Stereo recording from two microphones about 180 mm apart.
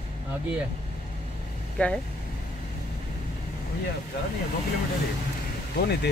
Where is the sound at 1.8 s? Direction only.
10° left (ahead or behind).